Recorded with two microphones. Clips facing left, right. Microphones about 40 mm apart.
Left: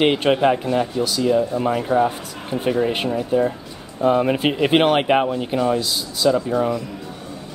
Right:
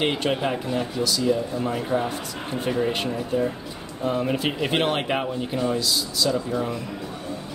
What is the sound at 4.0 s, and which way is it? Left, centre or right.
Speech, left.